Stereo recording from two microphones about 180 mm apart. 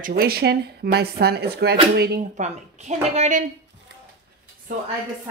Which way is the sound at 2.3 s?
40° right (ahead or behind).